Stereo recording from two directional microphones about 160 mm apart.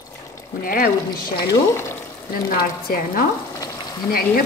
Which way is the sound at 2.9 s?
65° left (ahead or behind).